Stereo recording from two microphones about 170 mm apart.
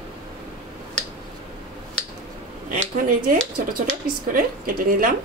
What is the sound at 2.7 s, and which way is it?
Speech, 50° right (ahead or behind).